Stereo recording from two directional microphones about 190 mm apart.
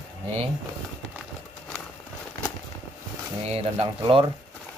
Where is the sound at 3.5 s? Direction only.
30° right (ahead or behind).